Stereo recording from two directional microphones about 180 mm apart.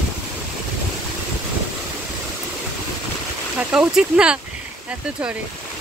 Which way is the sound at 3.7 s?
5° right (ahead or behind).